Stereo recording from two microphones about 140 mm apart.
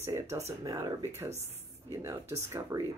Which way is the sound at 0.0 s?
20° right (ahead or behind).